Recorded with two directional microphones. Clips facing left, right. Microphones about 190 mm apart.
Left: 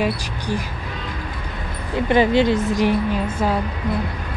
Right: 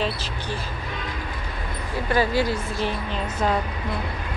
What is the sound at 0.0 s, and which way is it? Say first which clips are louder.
Speech: left 5 dB; 15° left (ahead or behind).